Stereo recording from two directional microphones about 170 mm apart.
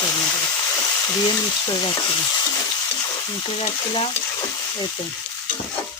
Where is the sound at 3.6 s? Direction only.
30° left (ahead or behind).